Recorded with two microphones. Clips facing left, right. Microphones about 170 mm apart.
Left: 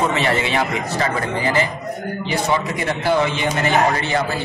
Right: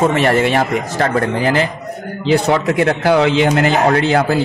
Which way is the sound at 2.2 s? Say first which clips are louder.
Right 8 dB; 70° right (ahead or behind).